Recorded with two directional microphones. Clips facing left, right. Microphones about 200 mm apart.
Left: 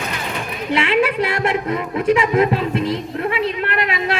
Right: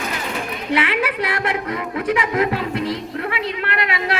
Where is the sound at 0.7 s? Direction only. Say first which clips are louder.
Left 4 dB; 25° left (ahead or behind).